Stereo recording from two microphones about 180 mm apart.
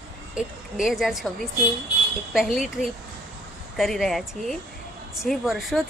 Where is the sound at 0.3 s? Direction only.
Centre (ahead or behind).